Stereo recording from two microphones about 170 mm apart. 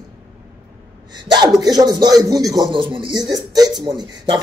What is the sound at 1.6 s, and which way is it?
Speech, 25° right (ahead or behind).